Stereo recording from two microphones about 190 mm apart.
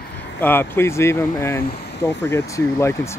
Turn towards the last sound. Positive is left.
turn(degrees=15)  # may be behind; listen again after turning